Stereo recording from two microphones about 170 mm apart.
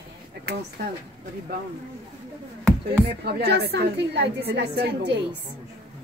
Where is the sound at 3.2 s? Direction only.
70° right (ahead or behind).